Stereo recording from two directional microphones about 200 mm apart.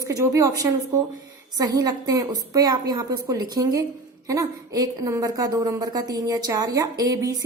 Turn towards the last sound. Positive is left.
turn(degrees=-15)  # may be behind; listen again after turning